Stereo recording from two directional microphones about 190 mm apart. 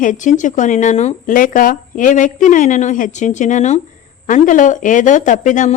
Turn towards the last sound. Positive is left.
turn(degrees=40)  # may be behind; listen again after turning